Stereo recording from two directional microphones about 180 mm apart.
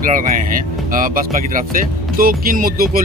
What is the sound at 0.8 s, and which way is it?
Speech, 50° right (ahead or behind).